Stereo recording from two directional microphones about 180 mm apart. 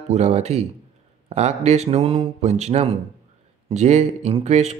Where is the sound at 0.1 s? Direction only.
40° right (ahead or behind).